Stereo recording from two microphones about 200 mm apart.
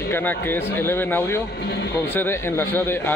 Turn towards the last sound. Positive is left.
turn(degrees=10)  # may be behind; listen again after turning